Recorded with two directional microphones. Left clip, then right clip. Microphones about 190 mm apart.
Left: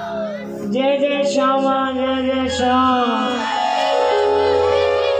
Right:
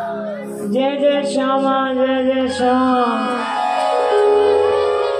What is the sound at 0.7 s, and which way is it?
Music, 35° right (ahead or behind).